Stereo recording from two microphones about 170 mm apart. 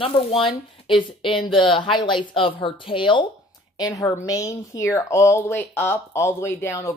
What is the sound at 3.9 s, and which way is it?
A woman's voice, 20° left (ahead or behind).